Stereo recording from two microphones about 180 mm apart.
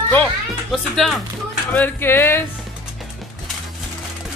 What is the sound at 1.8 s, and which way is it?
Speech, 10° left (ahead or behind).